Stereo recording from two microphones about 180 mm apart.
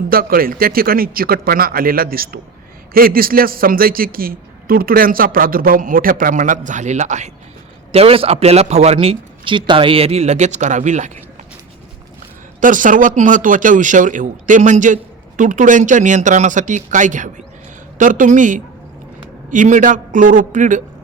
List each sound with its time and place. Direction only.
0.1 s a man's voice: 55° right (ahead or behind)
12.5 s a man's voice: 45° right (ahead or behind)